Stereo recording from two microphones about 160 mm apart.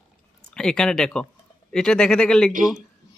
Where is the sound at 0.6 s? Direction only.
5° left (ahead or behind).